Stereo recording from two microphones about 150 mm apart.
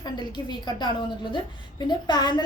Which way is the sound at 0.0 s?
30° left (ahead or behind).